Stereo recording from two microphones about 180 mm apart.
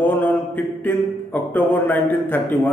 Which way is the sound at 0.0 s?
10° left (ahead or behind).